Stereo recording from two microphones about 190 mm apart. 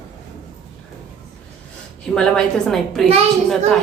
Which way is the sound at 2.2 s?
5° left (ahead or behind).